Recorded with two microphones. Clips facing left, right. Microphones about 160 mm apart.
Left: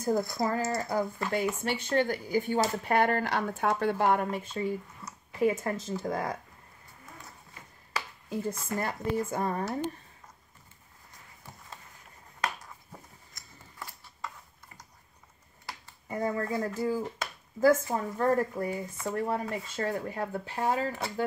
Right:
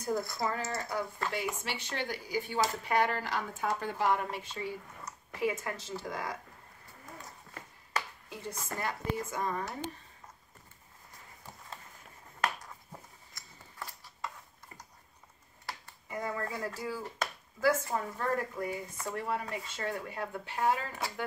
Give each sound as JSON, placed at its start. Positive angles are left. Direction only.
{"t": 0.0, "sound": "speech", "side_deg": 45}
{"t": 1.6, "sound": "speech", "side_deg": 55}
{"t": 5.4, "sound": "speech", "side_deg": 35}
{"t": 5.8, "sound": "speech", "side_deg": 50}
{"t": 8.3, "sound": "speech", "side_deg": 45}
{"t": 16.1, "sound": "speech", "side_deg": 35}
{"t": 17.6, "sound": "speech", "side_deg": 50}
{"t": 18.2, "sound": "speech", "side_deg": 35}